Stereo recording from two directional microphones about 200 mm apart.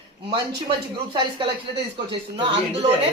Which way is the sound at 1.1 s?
25° right (ahead or behind).